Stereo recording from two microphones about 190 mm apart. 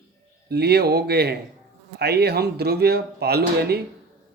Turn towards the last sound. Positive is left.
turn(degrees=-55)  # may be behind; listen again after turning